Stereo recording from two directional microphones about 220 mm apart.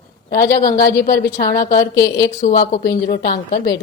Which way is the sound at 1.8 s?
15° left (ahead or behind).